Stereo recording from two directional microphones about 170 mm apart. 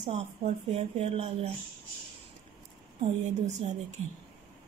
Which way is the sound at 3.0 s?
45° right (ahead or behind).